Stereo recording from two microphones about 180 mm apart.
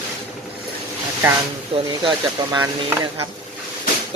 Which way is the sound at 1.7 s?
30° right (ahead or behind).